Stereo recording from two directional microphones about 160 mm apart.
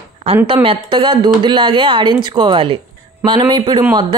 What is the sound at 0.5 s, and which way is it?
A woman's voice, 35° right (ahead or behind).